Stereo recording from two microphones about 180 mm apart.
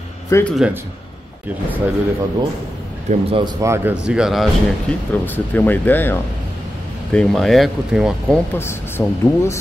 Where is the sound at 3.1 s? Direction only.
30° right (ahead or behind).